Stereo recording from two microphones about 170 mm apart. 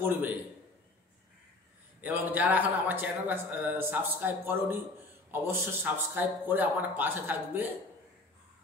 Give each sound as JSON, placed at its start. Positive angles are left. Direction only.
{"t": 0.0, "sound": "a man's voice", "side_deg": -10}
{"t": 2.0, "sound": "a man's voice", "side_deg": -10}